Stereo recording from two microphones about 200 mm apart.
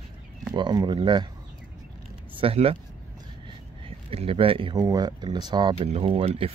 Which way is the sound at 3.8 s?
30° right (ahead or behind).